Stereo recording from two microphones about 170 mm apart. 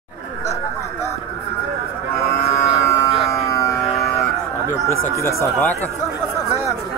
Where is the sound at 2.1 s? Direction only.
15° left (ahead or behind).